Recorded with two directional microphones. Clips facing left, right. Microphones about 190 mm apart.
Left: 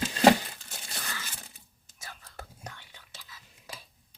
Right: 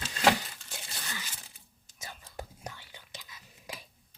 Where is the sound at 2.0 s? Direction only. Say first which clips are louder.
Right 3 dB; 15° right (ahead or behind).